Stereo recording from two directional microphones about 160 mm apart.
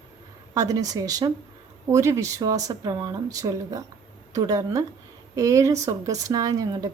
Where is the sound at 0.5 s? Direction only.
20° right (ahead or behind).